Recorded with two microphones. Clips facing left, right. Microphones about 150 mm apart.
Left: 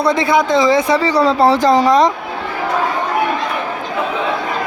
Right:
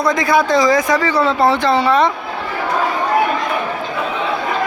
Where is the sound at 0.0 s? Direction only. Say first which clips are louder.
Left 1 dB; 30° left (ahead or behind).